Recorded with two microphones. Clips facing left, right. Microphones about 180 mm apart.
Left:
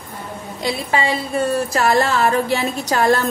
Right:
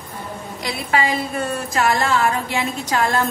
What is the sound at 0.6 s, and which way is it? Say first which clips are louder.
A woman's voice: left 1 dB; 30° left (ahead or behind).